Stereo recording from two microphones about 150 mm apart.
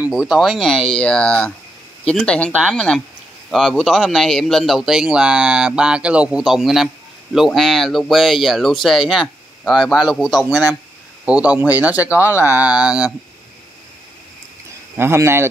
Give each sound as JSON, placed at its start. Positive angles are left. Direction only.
{"t": 0.0, "sound": "a man's voice", "side_deg": -5}
{"t": 15.0, "sound": "speech", "side_deg": -15}